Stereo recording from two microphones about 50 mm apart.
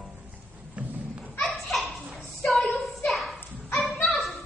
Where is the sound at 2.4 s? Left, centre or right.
Centre.